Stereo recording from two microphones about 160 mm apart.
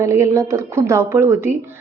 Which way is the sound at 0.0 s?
20° right (ahead or behind).